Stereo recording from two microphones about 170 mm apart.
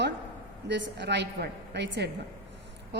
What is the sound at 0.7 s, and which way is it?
A woman's voice, 90° right.